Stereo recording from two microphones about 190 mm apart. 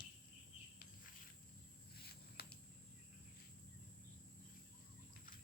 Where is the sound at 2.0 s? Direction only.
55° left (ahead or behind).